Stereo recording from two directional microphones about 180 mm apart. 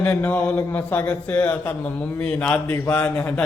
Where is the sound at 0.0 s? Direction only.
10° left (ahead or behind).